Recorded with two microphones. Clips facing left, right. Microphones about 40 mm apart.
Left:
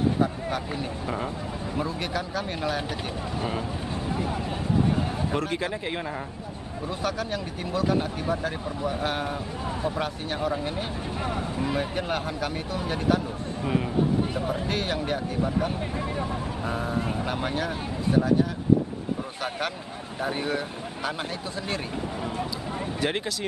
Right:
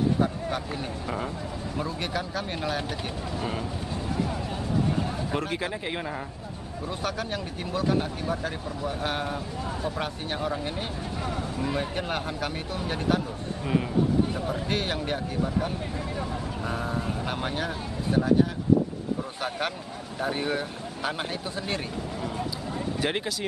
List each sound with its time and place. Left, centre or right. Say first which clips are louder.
0.2 s speech: left 1 dB; centre
4.8 s a sound: left 2 dB; centre
5.3 s speech: left 1 dB; centre
7.0 s speech: left 2 dB; centre
11.2 s speech: left 2 dB; centre
11.7 s speech: left 2 dB; centre
14.3 s speech: left 2 dB; centre
14.7 s speech: left 1 dB; centre
16.2 s speech: left 2 dB; centre
20.2 s speech: even; centre
22.9 s speech: left 1 dB; centre